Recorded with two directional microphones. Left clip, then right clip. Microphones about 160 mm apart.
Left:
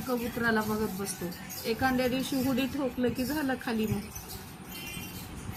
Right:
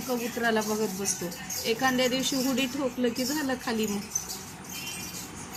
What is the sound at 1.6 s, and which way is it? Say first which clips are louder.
A woman's voice: right 3 dB; centre (ahead or behind).